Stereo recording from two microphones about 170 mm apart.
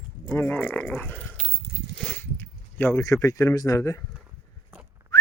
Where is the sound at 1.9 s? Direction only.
10° left (ahead or behind).